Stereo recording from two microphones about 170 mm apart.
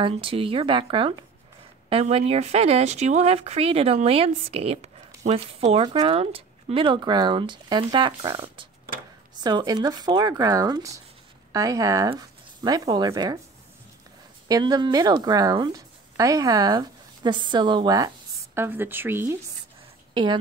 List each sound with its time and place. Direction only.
0.0 s speech: 35° right (ahead or behind)
14.5 s a woman's voice: 25° right (ahead or behind)